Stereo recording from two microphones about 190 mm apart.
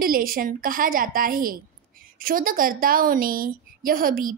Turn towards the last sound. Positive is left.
turn(degrees=-50)  # may be behind; listen again after turning